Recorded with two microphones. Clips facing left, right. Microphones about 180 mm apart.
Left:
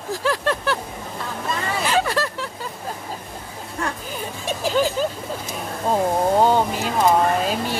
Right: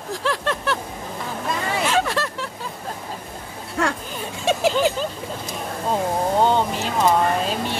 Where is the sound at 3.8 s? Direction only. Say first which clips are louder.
Right 5 dB; 85° right.